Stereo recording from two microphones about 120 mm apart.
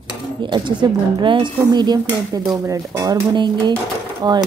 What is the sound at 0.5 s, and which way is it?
Stir, 40° right (ahead or behind).